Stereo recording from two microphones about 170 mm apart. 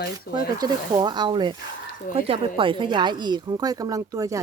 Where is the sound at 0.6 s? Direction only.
25° right (ahead or behind).